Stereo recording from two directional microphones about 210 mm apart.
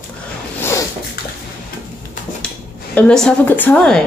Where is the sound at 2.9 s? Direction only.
5° left (ahead or behind).